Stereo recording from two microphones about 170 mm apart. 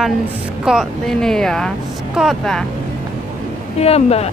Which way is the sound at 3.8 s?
35° left (ahead or behind).